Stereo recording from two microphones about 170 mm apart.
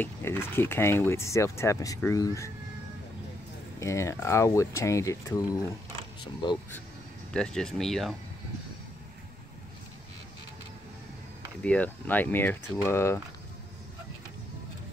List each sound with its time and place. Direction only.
0.0 s speech: 15° left (ahead or behind)
3.8 s speech: 15° left (ahead or behind)
7.3 s speech: 5° left (ahead or behind)
11.6 s speech: 10° left (ahead or behind)